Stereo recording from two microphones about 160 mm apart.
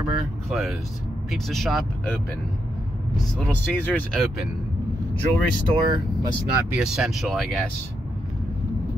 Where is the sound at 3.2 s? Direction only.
10° left (ahead or behind).